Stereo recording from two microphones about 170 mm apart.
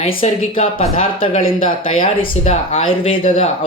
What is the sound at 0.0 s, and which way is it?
Speech, 35° left (ahead or behind).